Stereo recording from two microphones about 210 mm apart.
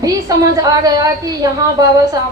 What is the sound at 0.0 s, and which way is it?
A woman's voice, 15° right (ahead or behind).